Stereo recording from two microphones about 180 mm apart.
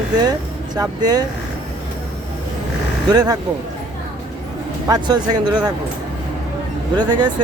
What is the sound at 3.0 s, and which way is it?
Speech, 20° right (ahead or behind).